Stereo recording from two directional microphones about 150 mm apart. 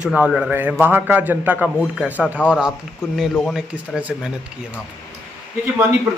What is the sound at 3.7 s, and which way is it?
Speech, 10° right (ahead or behind).